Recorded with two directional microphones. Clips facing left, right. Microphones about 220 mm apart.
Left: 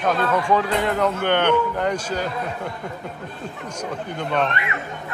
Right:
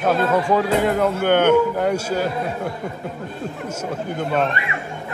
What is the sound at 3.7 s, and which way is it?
Speech, 5° right (ahead or behind).